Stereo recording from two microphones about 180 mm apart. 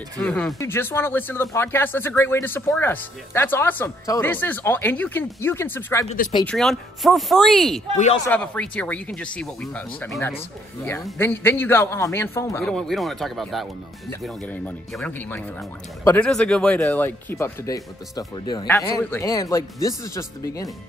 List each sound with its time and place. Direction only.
0.2 s speech: 5° left (ahead or behind)
6.4 s speech: centre (ahead or behind)
10.8 s speech: 15° left (ahead or behind)
12.6 s speech: centre (ahead or behind); by 20.7 s 20° left (ahead or behind)